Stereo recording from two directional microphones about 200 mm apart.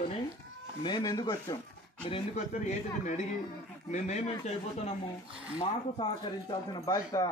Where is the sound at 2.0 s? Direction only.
30° left (ahead or behind).